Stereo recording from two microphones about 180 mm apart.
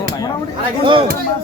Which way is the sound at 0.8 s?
30° right (ahead or behind).